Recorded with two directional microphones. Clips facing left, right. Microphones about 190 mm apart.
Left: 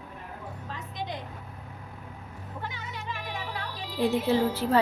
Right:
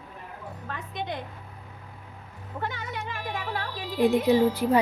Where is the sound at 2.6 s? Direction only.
60° right (ahead or behind).